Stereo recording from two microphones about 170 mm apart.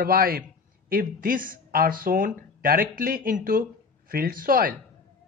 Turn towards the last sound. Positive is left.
turn(degrees=-55)  # may be behind; listen again after turning